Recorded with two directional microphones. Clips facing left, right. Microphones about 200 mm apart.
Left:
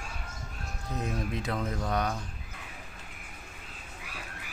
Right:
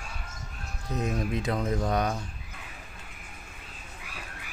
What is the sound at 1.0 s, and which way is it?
Speech, 20° right (ahead or behind).